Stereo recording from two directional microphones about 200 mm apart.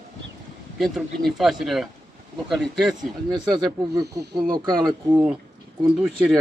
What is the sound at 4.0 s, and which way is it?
Speech, 20° right (ahead or behind).